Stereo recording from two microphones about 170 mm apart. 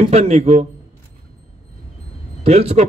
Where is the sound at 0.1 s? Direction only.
40° right (ahead or behind).